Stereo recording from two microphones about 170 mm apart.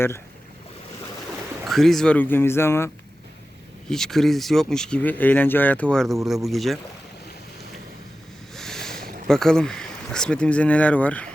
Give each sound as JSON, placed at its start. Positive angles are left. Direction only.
{"t": 1.6, "sound": "speech", "side_deg": 0}
{"t": 3.8, "sound": "speech", "side_deg": 5}
{"t": 8.5, "sound": "a sound", "side_deg": 5}
{"t": 9.2, "sound": "speech", "side_deg": 5}